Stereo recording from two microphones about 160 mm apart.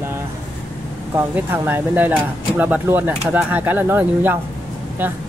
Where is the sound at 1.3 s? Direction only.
10° right (ahead or behind).